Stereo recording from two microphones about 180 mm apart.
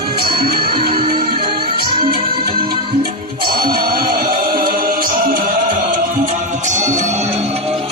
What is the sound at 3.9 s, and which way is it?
Music, 55° right (ahead or behind).